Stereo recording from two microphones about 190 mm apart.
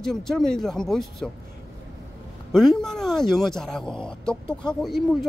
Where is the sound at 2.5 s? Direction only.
Centre (ahead or behind).